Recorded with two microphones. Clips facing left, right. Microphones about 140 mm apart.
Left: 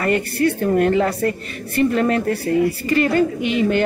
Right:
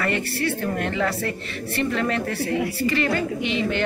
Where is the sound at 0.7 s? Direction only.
40° left (ahead or behind).